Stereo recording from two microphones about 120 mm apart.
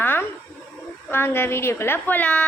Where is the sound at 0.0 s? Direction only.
15° left (ahead or behind).